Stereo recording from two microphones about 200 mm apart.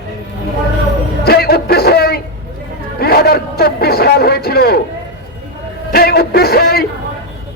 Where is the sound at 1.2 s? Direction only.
50° left (ahead or behind).